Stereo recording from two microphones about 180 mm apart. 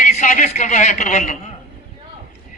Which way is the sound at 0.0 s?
45° left (ahead or behind).